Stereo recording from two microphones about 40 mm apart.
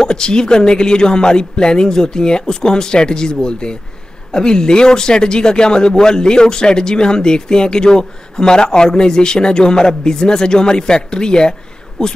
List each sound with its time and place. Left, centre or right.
0.0 s speech: centre